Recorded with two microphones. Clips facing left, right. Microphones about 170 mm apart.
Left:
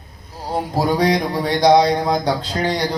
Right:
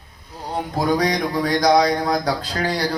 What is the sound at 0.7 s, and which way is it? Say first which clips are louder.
Speech: left 2 dB; 30° left (ahead or behind).